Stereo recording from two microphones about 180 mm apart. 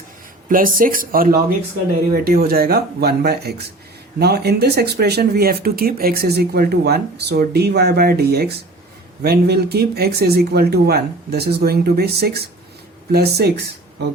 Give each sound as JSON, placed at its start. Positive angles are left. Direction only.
{"t": 0.4, "sound": "speech", "side_deg": -50}